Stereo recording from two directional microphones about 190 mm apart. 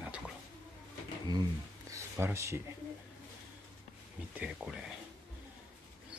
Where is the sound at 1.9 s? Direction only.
15° right (ahead or behind).